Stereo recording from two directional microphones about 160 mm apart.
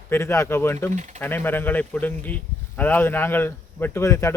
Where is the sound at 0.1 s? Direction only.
15° left (ahead or behind).